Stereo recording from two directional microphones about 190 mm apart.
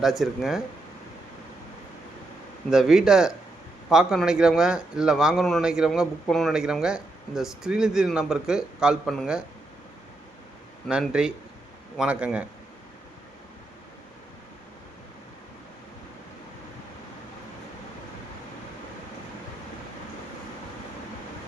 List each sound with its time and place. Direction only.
0.0 s a man's voice: centre (ahead or behind)
2.6 s a man's voice: 5° right (ahead or behind)
10.8 s a man's voice: 5° right (ahead or behind)